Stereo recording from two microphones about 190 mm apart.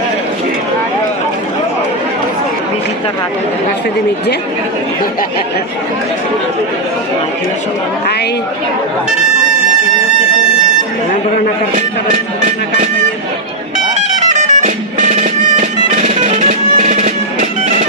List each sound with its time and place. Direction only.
11.7 s speech: 40° right (ahead or behind)
14.3 s music: 40° right (ahead or behind)